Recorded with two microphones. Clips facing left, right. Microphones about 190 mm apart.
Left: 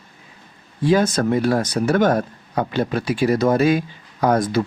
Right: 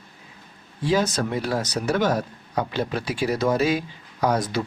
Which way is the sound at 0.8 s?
50° left (ahead or behind).